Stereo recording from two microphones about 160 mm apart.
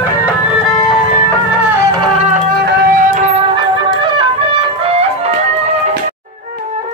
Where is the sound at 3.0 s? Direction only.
50° right (ahead or behind).